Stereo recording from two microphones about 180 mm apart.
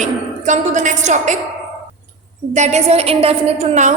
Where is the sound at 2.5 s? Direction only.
40° right (ahead or behind).